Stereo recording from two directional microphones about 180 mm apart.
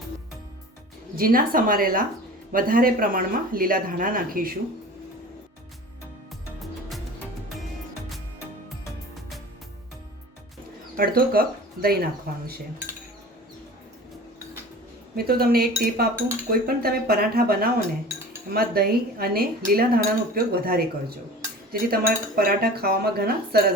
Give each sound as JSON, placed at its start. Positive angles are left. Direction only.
{"t": 1.1, "sound": "speech", "side_deg": -55}
{"t": 10.9, "sound": "speech", "side_deg": -55}
{"t": 15.1, "sound": "speech", "side_deg": -55}